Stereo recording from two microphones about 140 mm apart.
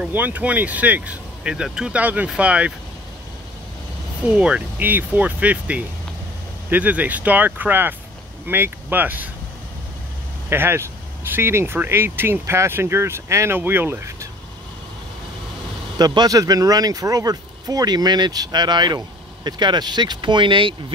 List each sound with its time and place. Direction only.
0.0 s speech: 10° right (ahead or behind)
4.3 s speech: 5° right (ahead or behind)
10.5 s speech: 15° right (ahead or behind)
16.0 s speech: 25° right (ahead or behind)